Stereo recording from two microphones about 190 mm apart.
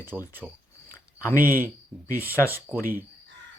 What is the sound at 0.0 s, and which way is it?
Speech, 10° right (ahead or behind).